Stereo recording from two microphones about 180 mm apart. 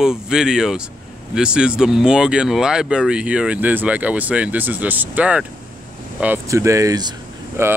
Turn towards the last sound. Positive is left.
turn(degrees=-15)  # may be behind; listen again after turning